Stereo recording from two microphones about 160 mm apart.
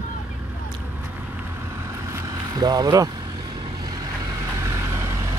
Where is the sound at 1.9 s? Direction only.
20° right (ahead or behind).